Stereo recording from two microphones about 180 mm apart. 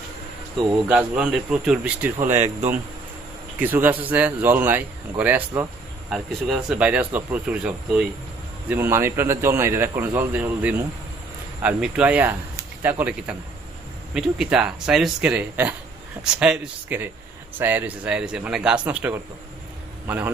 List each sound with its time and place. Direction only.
0.9 s speech: 5° right (ahead or behind)
3.6 s a man's voice: 10° right (ahead or behind)